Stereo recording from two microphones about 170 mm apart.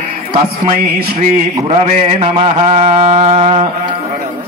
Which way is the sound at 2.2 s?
40° right (ahead or behind).